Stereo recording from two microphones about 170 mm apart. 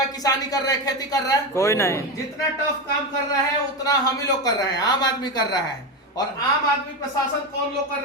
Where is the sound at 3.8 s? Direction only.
20° left (ahead or behind).